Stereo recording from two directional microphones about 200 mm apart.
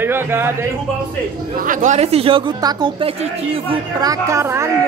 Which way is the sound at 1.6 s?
40° right (ahead or behind).